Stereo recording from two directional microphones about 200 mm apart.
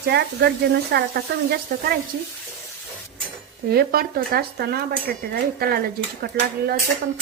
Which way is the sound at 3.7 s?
50° right (ahead or behind).